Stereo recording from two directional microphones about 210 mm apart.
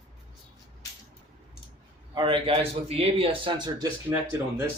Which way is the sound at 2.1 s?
25° right (ahead or behind).